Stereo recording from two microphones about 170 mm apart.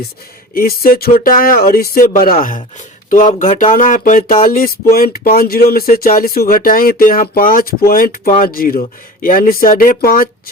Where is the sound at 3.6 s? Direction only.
50° left (ahead or behind).